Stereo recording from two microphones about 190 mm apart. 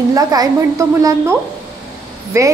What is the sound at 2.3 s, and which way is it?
Speech, 15° right (ahead or behind).